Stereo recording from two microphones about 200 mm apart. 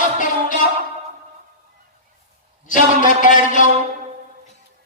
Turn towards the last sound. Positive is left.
turn(degrees=40)  # may be behind; listen again after turning